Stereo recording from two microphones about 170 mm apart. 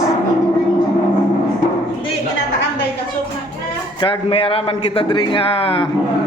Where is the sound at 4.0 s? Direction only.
30° left (ahead or behind).